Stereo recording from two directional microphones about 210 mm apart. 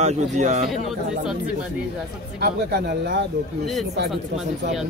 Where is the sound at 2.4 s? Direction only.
50° right (ahead or behind).